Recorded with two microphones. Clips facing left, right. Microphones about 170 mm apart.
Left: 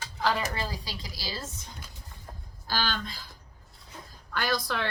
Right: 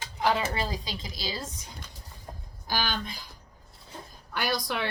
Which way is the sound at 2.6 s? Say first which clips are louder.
Right 1 dB; 15° right (ahead or behind).